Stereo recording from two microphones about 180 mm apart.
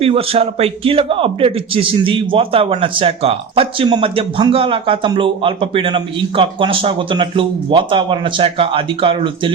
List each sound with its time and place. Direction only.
0.0 s a man's voice: 30° right (ahead or behind)